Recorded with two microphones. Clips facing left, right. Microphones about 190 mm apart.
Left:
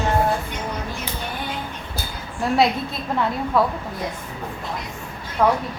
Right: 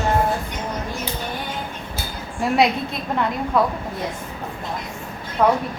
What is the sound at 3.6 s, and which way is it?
Speech, centre (ahead or behind).